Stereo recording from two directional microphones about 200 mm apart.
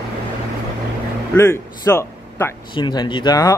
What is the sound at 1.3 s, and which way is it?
A man's voice, 15° left (ahead or behind).